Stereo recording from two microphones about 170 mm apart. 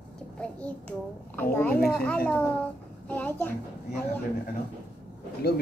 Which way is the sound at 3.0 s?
10° left (ahead or behind).